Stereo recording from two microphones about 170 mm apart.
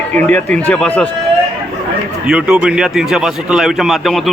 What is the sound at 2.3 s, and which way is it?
Speech, 5° right (ahead or behind).